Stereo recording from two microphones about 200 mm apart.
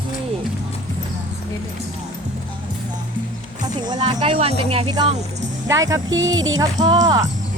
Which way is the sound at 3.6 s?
20° right (ahead or behind).